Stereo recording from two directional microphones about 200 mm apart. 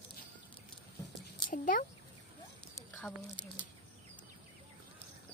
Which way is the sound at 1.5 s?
40° left (ahead or behind).